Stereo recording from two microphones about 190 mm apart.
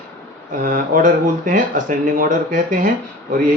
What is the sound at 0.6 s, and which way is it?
Speech, 45° right (ahead or behind).